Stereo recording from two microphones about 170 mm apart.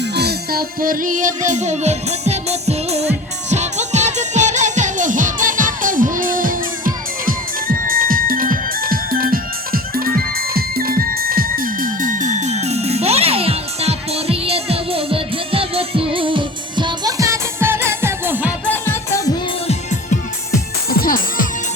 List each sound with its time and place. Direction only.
0.0 s music: 75° right (ahead or behind); by 18.5 s 15° right (ahead or behind)
18.7 s music: 15° left (ahead or behind)
19.6 s music: 45° left (ahead or behind)
20.9 s music: 60° left (ahead or behind)